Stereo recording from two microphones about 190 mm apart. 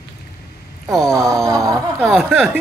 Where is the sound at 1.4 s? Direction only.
15° right (ahead or behind).